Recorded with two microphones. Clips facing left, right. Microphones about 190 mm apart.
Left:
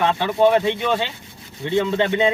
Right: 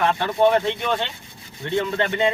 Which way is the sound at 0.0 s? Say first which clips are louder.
Left 2 dB; 20° left (ahead or behind).